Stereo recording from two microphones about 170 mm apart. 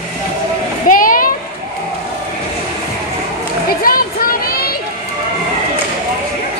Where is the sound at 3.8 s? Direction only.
60° left (ahead or behind).